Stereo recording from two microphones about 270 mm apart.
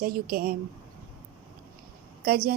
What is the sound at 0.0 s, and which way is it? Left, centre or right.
Speech, right.